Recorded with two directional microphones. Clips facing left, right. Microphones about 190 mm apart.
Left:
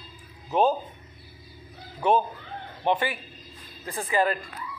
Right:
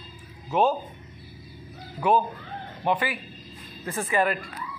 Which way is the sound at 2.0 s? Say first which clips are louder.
Even; 25° left (ahead or behind).